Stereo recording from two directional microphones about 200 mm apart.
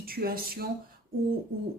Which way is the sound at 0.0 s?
50° right (ahead or behind).